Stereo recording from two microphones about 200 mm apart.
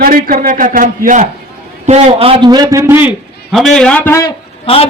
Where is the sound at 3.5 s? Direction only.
Centre (ahead or behind).